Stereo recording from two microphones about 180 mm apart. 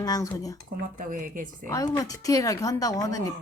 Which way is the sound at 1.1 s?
50° right (ahead or behind).